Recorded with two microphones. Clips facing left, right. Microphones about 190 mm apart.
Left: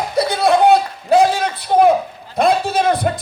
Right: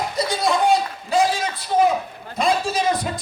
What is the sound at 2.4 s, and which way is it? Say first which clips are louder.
Speech: left 5 dB; 60° left (ahead or behind).